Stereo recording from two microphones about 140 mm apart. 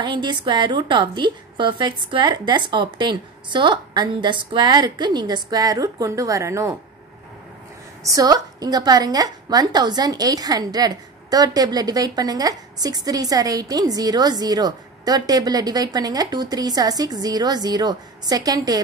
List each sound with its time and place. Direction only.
0.0 s a woman's voice: 35° right (ahead or behind)
8.0 s a woman's voice: 25° right (ahead or behind)